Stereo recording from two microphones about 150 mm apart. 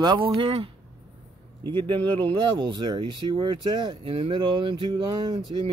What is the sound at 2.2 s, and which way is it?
Speech, 30° right (ahead or behind).